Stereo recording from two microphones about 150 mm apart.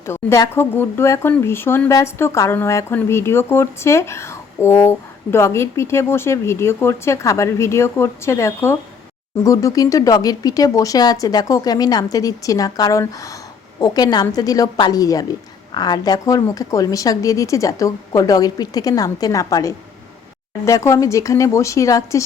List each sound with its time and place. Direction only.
0.0 s a woman's voice: 20° left (ahead or behind)